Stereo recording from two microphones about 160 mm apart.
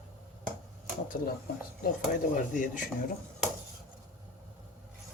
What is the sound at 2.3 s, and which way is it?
Speech, 55° left (ahead or behind).